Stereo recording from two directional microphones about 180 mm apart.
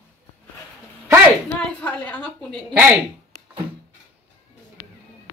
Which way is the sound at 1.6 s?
10° left (ahead or behind).